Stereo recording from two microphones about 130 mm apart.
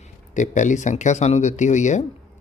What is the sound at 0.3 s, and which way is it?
Speech, 70° left (ahead or behind).